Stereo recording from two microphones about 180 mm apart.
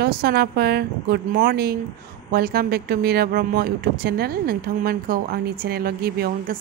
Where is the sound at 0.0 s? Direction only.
60° right (ahead or behind).